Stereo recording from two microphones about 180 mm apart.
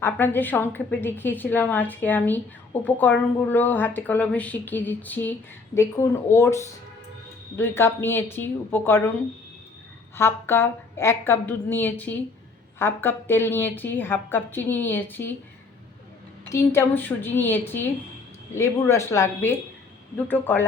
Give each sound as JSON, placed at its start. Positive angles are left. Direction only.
{"t": 0.0, "sound": "a woman's voice", "side_deg": 10}
{"t": 10.2, "sound": "a woman's voice", "side_deg": 15}
{"t": 16.5, "sound": "a woman's voice", "side_deg": 15}